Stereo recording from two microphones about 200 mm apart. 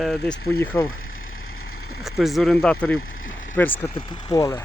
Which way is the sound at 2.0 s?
Centre (ahead or behind).